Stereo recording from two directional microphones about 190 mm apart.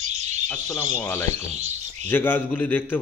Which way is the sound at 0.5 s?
15° left (ahead or behind).